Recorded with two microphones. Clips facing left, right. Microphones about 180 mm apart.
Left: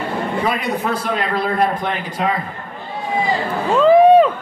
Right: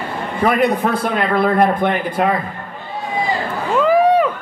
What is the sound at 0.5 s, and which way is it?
A man's voice, 55° right (ahead or behind).